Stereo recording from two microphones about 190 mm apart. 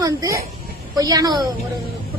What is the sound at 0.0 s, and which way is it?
A woman's voice, 20° right (ahead or behind).